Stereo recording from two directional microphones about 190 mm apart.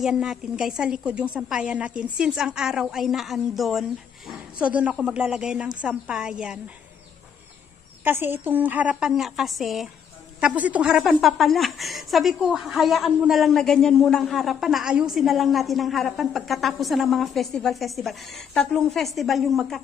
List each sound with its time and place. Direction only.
0.0 s a woman's voice: 5° right (ahead or behind)
8.0 s a woman's voice: 10° right (ahead or behind)